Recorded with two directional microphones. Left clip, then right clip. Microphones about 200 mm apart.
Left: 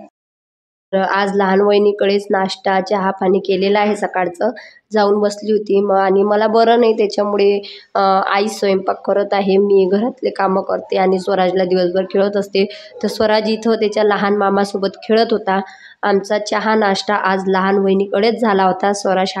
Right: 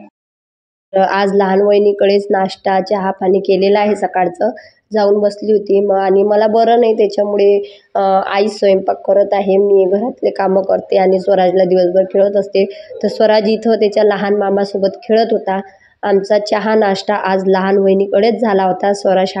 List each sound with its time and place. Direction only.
0.9 s a woman's voice: 5° right (ahead or behind)